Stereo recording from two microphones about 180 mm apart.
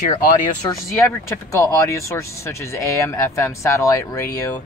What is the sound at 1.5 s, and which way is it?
Speech, 15° left (ahead or behind).